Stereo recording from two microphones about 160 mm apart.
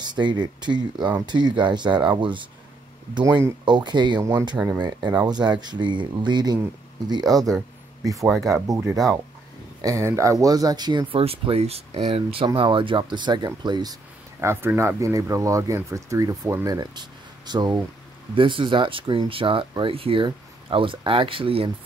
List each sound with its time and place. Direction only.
0.0 s speech: 30° right (ahead or behind)
4.6 s speech: 10° right (ahead or behind)
5.1 s speech: 25° right (ahead or behind)
14.4 s speech: 15° right (ahead or behind); by 21.7 s 35° right (ahead or behind)